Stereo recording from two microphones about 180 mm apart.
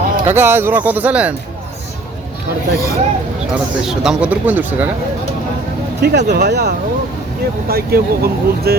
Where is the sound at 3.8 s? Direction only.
5° right (ahead or behind).